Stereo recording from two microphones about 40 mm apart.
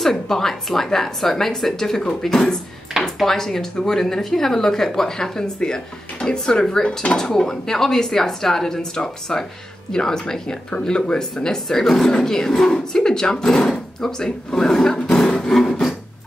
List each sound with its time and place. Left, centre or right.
0.0 s speech: centre